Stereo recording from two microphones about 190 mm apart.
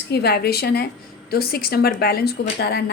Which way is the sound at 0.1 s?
60° left (ahead or behind).